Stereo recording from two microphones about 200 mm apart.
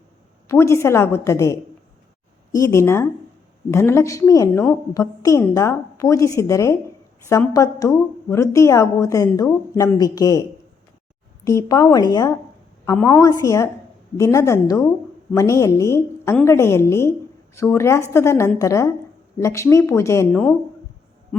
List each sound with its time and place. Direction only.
0.4 s a woman's voice: 15° left (ahead or behind)
11.4 s a woman's voice: 15° left (ahead or behind)